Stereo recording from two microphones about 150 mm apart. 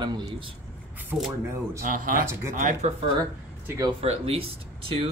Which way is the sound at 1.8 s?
65° right (ahead or behind).